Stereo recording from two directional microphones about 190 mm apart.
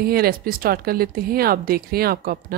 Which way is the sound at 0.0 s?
50° right (ahead or behind).